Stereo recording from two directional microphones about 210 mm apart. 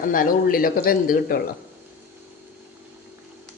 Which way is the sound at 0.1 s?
40° left (ahead or behind).